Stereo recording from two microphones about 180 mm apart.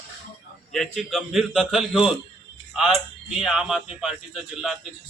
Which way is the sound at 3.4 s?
5° right (ahead or behind).